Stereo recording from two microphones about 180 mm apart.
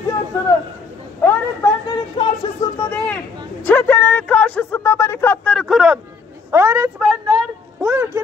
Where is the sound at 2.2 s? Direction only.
25° left (ahead or behind).